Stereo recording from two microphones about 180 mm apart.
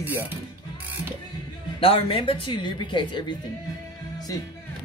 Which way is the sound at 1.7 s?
30° left (ahead or behind).